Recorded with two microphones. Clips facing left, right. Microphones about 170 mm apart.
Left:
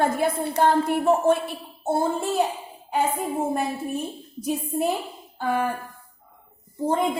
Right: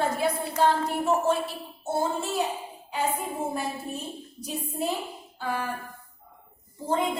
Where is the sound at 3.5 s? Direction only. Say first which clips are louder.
Left 6 dB; 50° left (ahead or behind).